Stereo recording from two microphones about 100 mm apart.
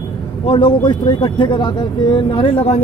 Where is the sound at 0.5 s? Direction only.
55° left (ahead or behind).